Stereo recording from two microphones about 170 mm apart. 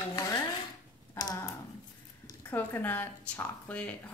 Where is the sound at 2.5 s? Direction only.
10° left (ahead or behind).